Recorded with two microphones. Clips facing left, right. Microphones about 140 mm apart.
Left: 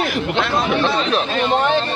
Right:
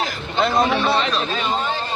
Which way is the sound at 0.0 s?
70° left (ahead or behind).